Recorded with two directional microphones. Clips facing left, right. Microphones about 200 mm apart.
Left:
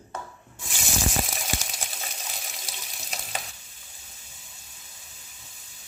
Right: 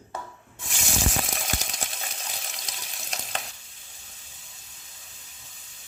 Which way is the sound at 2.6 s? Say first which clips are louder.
Even; 5° left (ahead or behind).